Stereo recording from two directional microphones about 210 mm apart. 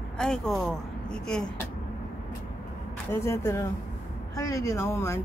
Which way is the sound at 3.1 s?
10° left (ahead or behind).